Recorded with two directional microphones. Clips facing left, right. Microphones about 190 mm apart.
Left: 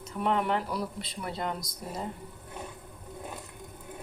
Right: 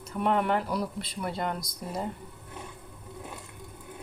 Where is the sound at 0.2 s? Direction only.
Centre (ahead or behind).